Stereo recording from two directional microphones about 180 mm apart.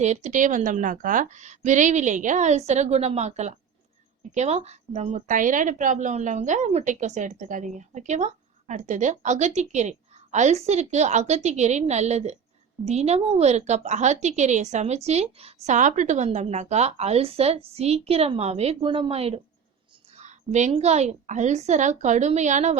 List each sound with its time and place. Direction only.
0.0 s speech: 40° right (ahead or behind)